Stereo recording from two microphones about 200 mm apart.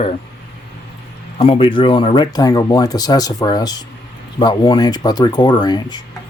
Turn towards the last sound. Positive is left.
turn(degrees=20)  # may be behind; listen again after turning